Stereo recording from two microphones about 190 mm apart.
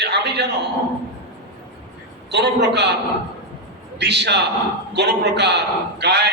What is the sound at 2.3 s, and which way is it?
Speech, 60° right (ahead or behind).